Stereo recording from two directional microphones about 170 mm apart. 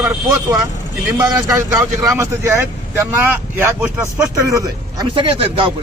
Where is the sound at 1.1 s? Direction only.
20° right (ahead or behind).